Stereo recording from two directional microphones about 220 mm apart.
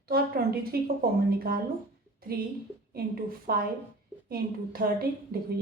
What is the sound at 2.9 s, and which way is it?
A woman's voice, 40° right (ahead or behind).